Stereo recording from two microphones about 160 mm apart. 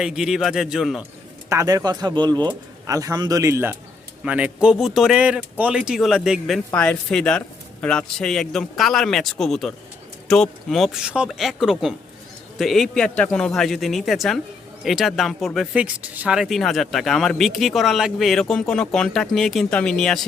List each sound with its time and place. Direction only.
0.0 s speech: 5° right (ahead or behind)
1.5 s speech: 20° right (ahead or behind); by 6.6 s 5° right (ahead or behind)
6.7 s speech: 5° left (ahead or behind)